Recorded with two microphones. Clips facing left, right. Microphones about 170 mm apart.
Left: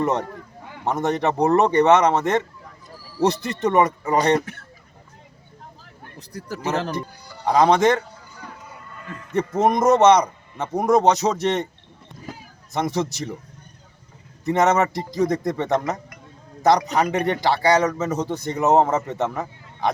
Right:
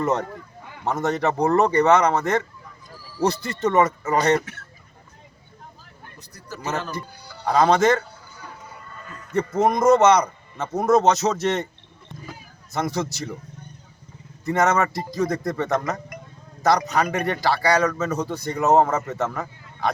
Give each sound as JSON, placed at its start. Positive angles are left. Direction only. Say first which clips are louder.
{"t": 0.0, "sound": "a man's voice", "louder": "left 1 dB", "side_deg": 15}
{"t": 7.4, "sound": "speech", "louder": "left 1 dB", "side_deg": 15}
{"t": 9.6, "sound": "a man's voice", "louder": "even", "side_deg": 20}
{"t": 12.7, "sound": "speech", "louder": "left 2 dB", "side_deg": 20}
{"t": 14.4, "sound": "a man's voice", "louder": "left 2 dB", "side_deg": 20}